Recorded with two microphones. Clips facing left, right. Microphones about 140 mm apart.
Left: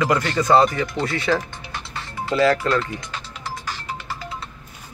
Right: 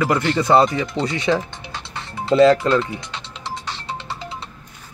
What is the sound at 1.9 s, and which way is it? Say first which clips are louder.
Music: right 6 dB; 25° right (ahead or behind).